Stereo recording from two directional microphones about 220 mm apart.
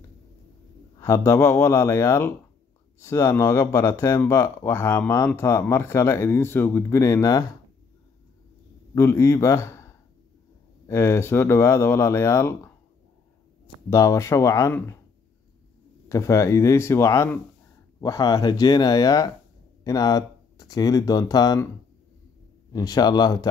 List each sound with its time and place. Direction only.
0.9 s speech: 15° left (ahead or behind)
8.9 s speech: 15° left (ahead or behind)
10.9 s speech: 15° left (ahead or behind)
13.8 s speech: 15° left (ahead or behind)
16.1 s speech: 15° left (ahead or behind)
22.7 s speech: 15° left (ahead or behind)